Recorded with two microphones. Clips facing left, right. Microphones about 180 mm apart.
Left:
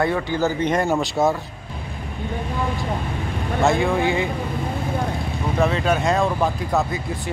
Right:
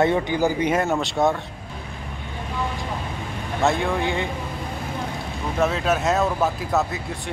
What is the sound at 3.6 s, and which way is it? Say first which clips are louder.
Speech: left 3 dB; centre (ahead or behind).